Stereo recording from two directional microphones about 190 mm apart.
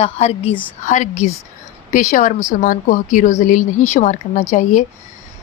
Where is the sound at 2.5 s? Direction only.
45° left (ahead or behind).